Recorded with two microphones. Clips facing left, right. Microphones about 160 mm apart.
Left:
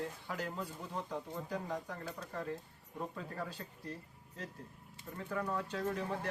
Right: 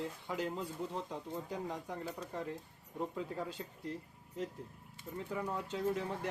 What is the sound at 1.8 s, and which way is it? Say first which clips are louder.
Speech: right 2 dB; 20° right (ahead or behind).